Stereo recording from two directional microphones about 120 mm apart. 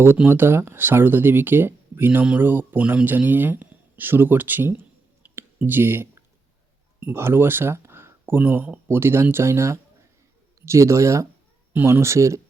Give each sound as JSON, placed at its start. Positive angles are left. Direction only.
{"t": 0.2, "sound": "speech", "side_deg": -20}
{"t": 5.2, "sound": "a sound", "side_deg": -20}
{"t": 5.5, "sound": "speech", "side_deg": -15}